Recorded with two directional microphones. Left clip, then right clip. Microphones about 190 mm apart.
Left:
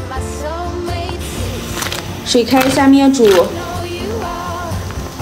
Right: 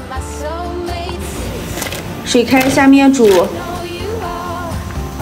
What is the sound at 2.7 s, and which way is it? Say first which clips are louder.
Speech: right 1 dB; centre (ahead or behind).